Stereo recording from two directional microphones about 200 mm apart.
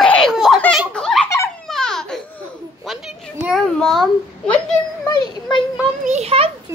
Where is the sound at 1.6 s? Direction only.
Centre (ahead or behind).